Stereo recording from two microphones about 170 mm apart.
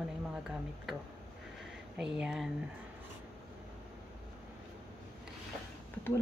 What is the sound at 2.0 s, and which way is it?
Speech, 5° right (ahead or behind).